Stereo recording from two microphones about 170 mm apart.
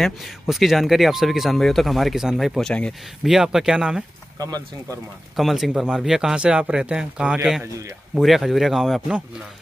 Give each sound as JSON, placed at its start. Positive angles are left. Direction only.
{"t": 0.0, "sound": "speech", "side_deg": 0}
{"t": 4.4, "sound": "speech", "side_deg": -20}
{"t": 5.3, "sound": "speech", "side_deg": 0}